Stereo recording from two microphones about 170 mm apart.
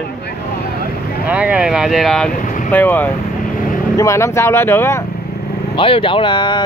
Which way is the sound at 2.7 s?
10° left (ahead or behind).